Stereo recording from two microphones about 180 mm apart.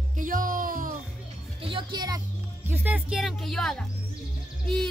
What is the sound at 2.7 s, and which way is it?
A woman's voice, 10° right (ahead or behind).